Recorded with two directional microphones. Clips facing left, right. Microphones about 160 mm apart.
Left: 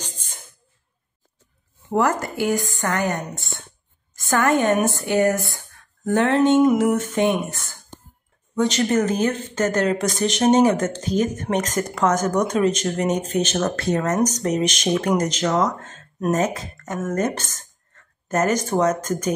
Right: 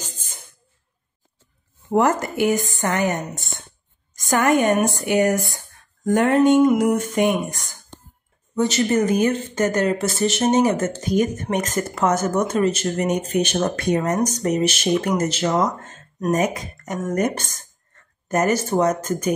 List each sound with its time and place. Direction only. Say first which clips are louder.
1.9 s speech: right 2 dB; 20° right (ahead or behind)